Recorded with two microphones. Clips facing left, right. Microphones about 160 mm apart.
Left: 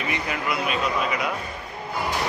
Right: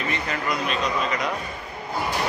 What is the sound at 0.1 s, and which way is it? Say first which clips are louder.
A man's voice: left 2 dB; 10° left (ahead or behind).